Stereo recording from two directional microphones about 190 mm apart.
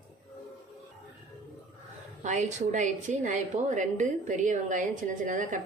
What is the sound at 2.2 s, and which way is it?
A woman's voice, 40° right (ahead or behind).